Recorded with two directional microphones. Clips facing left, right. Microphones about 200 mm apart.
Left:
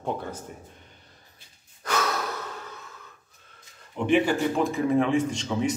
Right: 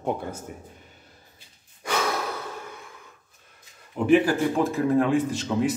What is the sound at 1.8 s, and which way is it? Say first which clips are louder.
Breathing: right 1 dB; 10° right (ahead or behind).